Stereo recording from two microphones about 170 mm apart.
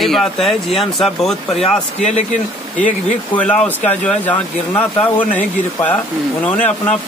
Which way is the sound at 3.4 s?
10° left (ahead or behind).